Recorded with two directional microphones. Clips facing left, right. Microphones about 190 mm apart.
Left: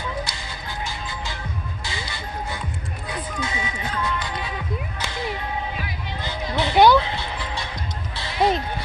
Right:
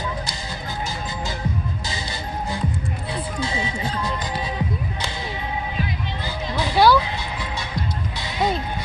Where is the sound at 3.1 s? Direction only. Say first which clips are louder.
Right 2 dB; 30° right (ahead or behind).